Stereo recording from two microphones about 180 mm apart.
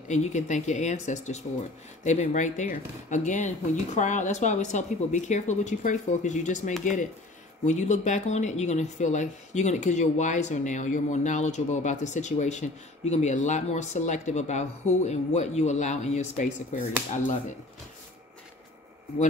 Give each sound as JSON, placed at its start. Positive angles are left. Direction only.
{"t": 0.1, "sound": "speech", "side_deg": 40}